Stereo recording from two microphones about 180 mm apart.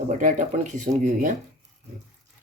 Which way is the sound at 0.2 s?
45° right (ahead or behind).